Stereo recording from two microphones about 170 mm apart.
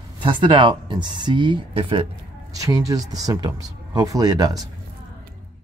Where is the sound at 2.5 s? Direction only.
20° right (ahead or behind).